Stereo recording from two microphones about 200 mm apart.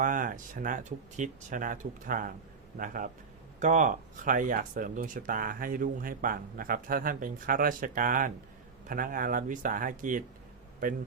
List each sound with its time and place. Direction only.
0.0 s speech: 40° right (ahead or behind)